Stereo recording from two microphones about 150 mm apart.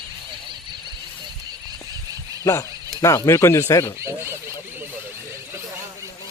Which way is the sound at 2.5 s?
20° left (ahead or behind).